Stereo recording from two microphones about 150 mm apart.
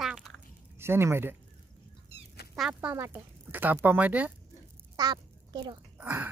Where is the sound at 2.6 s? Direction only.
5° right (ahead or behind).